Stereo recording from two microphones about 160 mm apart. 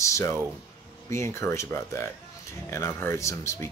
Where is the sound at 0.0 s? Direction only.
20° left (ahead or behind).